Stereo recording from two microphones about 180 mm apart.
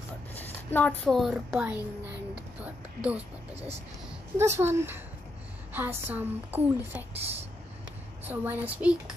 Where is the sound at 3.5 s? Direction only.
35° right (ahead or behind).